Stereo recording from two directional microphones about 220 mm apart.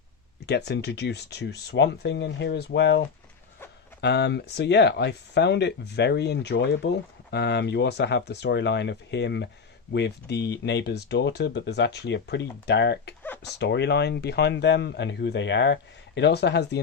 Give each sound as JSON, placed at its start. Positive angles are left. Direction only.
{"t": 0.4, "sound": "speech", "side_deg": 50}
{"t": 4.0, "sound": "speech", "side_deg": 50}